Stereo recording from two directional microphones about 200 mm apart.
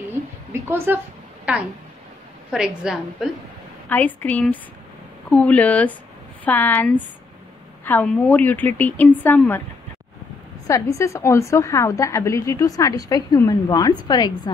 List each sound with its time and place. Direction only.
0.5 s a sound: 10° right (ahead or behind)
1.5 s a woman's voice: 5° right (ahead or behind)
3.9 s a woman's voice: 10° left (ahead or behind)
10.7 s a woman's voice: 15° left (ahead or behind)